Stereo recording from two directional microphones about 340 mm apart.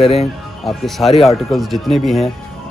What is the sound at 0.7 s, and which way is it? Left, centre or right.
Speech, centre.